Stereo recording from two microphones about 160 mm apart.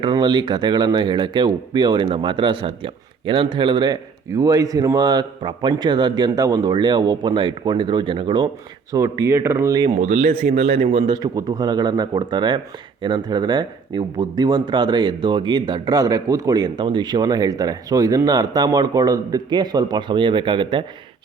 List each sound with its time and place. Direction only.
0.0 s speech: 30° right (ahead or behind)
9.9 s speech: 40° right (ahead or behind)
11.1 s speech: 25° right (ahead or behind)